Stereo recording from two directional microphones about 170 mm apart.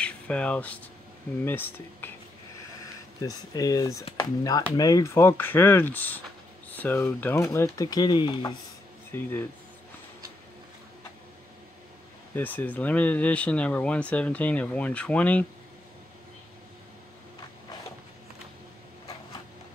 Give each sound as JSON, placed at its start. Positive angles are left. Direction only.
{"t": 0.0, "sound": "speech", "side_deg": 5}
{"t": 3.2, "sound": "speech", "side_deg": 20}
{"t": 9.1, "sound": "speech", "side_deg": 15}
{"t": 12.4, "sound": "speech", "side_deg": 10}